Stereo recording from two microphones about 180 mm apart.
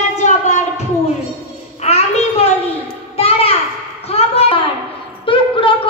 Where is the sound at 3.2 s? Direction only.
35° left (ahead or behind).